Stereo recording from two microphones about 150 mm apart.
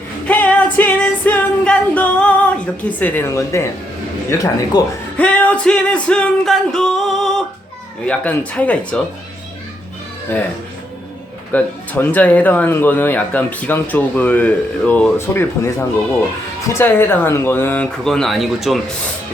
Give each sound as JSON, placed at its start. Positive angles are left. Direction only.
{"t": 0.3, "sound": "music", "side_deg": 10}
{"t": 3.0, "sound": "a woman's voice", "side_deg": 10}
{"t": 5.1, "sound": "music", "side_deg": 10}
{"t": 8.0, "sound": "speech", "side_deg": 10}
{"t": 11.5, "sound": "speech", "side_deg": 10}
{"t": 16.7, "sound": "speech", "side_deg": 15}